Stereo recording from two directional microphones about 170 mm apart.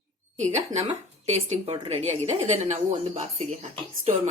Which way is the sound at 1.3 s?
30° right (ahead or behind).